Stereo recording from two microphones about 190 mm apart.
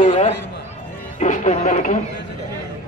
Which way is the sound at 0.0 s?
40° left (ahead or behind).